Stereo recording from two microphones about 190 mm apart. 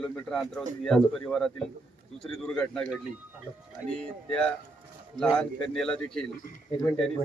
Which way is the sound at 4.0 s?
5° left (ahead or behind).